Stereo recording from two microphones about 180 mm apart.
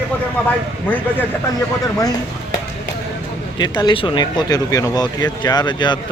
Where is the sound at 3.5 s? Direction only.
25° left (ahead or behind).